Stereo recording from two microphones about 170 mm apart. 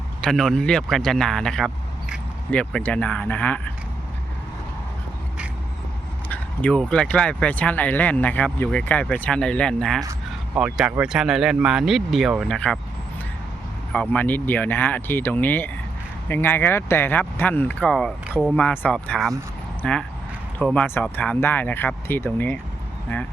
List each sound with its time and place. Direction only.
0.2 s speech: 5° left (ahead or behind)
6.2 s speech: 10° left (ahead or behind)
10.0 s a sound: 15° right (ahead or behind)
10.6 s speech: 5° right (ahead or behind)
13.9 s speech: 5° left (ahead or behind)